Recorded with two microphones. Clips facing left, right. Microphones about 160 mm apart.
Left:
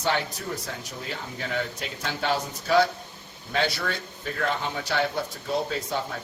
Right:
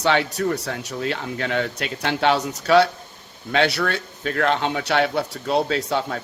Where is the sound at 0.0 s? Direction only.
75° right (ahead or behind).